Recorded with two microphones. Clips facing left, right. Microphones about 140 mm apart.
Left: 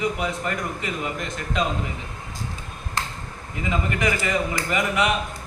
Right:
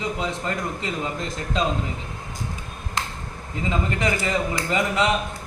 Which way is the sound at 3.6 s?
30° right (ahead or behind).